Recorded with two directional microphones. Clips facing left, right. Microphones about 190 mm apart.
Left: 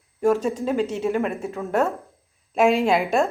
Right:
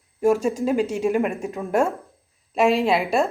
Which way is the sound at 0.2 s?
10° right (ahead or behind).